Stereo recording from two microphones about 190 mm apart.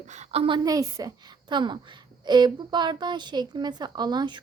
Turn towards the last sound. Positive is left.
turn(degrees=-20)  # may be behind; listen again after turning